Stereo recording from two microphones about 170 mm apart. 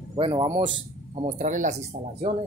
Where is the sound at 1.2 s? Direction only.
45° right (ahead or behind).